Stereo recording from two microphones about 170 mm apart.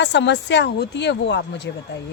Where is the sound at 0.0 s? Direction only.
90° left.